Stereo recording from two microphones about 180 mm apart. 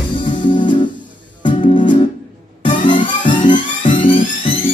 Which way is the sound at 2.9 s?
25° left (ahead or behind).